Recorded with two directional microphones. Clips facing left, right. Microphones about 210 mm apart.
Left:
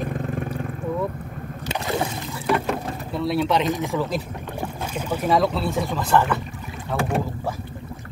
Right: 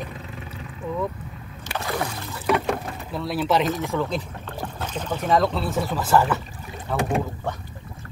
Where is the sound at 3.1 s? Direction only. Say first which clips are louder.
Left 1 dB; centre (ahead or behind).